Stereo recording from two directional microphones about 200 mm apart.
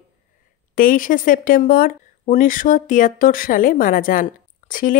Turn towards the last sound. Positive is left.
turn(degrees=40)  # may be behind; listen again after turning